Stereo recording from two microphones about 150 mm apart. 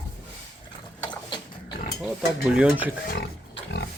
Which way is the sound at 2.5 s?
5° right (ahead or behind).